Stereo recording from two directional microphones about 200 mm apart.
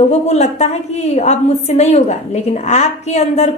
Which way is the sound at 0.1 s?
35° left (ahead or behind).